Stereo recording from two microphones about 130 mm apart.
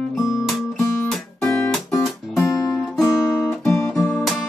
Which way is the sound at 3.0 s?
5° right (ahead or behind).